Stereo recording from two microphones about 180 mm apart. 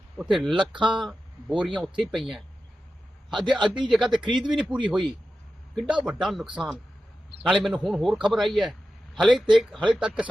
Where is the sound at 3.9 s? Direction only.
Centre (ahead or behind).